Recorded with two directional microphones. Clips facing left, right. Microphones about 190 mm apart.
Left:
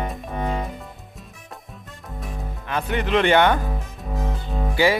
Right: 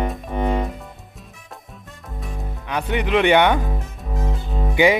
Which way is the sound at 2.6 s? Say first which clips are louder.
Right 1 dB; 15° right (ahead or behind).